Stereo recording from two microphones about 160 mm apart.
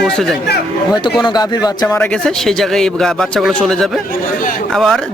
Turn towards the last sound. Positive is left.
turn(degrees=0)  # may be behind; listen again after turning